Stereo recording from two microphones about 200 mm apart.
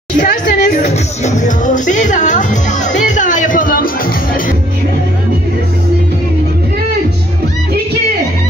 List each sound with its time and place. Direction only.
0.2 s speech: 40° left (ahead or behind)